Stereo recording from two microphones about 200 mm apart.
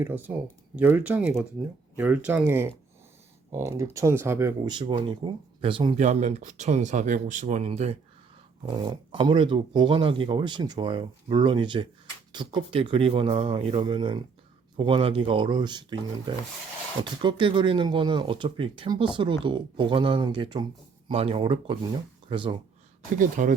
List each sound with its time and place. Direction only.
0.0 s speech: 10° right (ahead or behind); by 22.5 s 25° right (ahead or behind)
23.1 s speech: 40° right (ahead or behind)